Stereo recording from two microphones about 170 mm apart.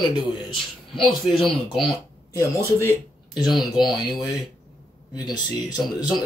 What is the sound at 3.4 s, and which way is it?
Speech, centre (ahead or behind).